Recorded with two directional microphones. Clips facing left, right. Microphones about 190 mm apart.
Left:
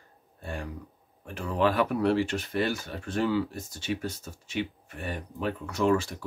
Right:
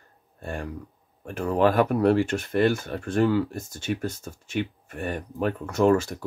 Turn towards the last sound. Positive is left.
turn(degrees=-45)  # may be behind; listen again after turning